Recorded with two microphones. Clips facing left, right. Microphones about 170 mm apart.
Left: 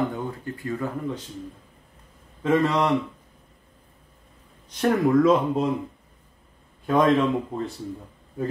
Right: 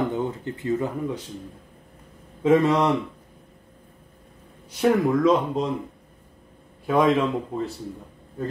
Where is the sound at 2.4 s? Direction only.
15° right (ahead or behind).